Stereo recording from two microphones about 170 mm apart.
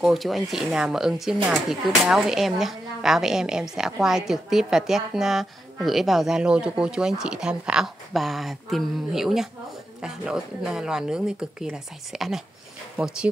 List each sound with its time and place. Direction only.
0.0 s speech: centre (ahead or behind)